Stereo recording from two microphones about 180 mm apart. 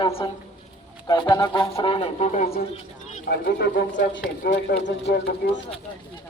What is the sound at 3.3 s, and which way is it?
Speech, 65° left (ahead or behind).